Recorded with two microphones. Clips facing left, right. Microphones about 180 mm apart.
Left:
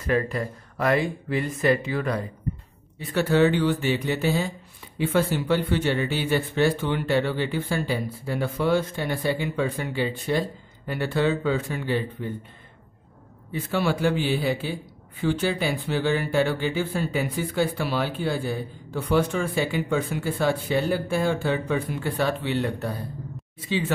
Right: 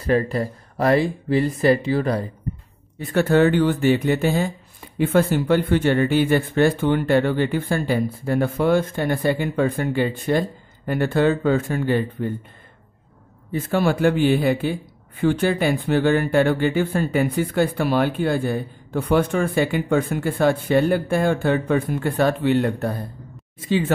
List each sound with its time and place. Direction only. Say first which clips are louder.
0.0 s speech: right 4 dB; 35° right (ahead or behind)
3.0 s a man's voice: right 3 dB; 50° right (ahead or behind)
13.5 s a man's voice: right 5 dB; 45° right (ahead or behind)